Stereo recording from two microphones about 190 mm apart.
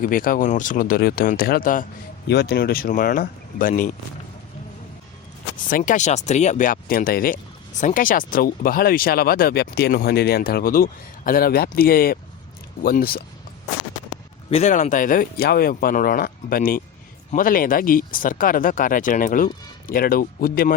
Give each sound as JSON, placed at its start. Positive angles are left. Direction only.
{"t": 0.0, "sound": "speech", "side_deg": 45}
{"t": 2.2, "sound": "speech", "side_deg": 60}
{"t": 5.7, "sound": "speech", "side_deg": 45}
{"t": 14.5, "sound": "speech", "side_deg": 40}